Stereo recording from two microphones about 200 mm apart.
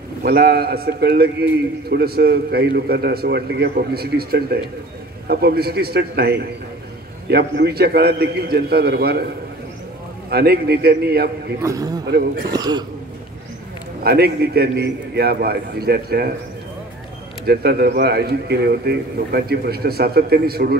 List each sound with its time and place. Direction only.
0.2 s a man's voice: 50° right (ahead or behind)
10.3 s a man's voice: 50° right (ahead or behind)
11.6 s a man's voice: 15° right (ahead or behind)
12.1 s a man's voice: 50° right (ahead or behind)
12.5 s speech: 20° right (ahead or behind)
14.0 s a man's voice: 50° right (ahead or behind)
17.5 s a man's voice: 50° right (ahead or behind)